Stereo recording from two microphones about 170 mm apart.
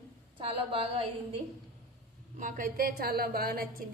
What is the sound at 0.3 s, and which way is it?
Speech, 30° right (ahead or behind).